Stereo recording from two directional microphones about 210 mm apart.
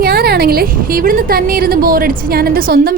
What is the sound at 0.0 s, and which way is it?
A woman's voice, 45° right (ahead or behind).